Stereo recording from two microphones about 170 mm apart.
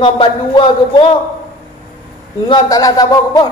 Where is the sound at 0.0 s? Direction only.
30° left (ahead or behind).